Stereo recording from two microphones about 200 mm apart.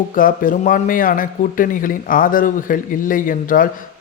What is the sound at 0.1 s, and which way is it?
A man's voice, 45° left (ahead or behind).